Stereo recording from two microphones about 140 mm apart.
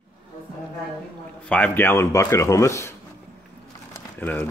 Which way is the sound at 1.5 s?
15° left (ahead or behind).